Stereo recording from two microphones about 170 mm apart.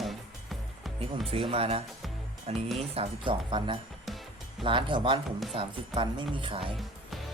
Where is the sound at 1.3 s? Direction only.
35° right (ahead or behind).